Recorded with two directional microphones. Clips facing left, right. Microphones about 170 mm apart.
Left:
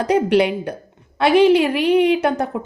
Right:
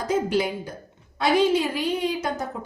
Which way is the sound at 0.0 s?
70° left (ahead or behind).